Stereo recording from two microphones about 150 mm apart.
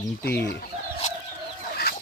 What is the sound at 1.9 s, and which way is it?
Chicken, 90° left.